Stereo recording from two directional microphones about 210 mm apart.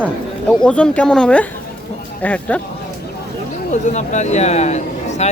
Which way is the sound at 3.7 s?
35° left (ahead or behind).